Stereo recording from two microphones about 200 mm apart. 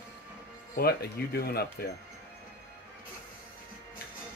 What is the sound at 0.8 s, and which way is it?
Speech, 50° left (ahead or behind).